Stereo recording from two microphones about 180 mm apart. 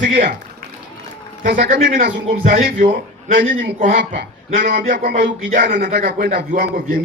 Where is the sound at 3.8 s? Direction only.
45° right (ahead or behind).